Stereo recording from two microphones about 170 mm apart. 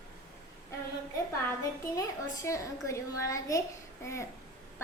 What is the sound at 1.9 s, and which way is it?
A woman's voice, 20° left (ahead or behind).